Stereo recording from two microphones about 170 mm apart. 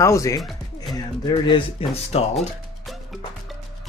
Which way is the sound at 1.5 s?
35° left (ahead or behind).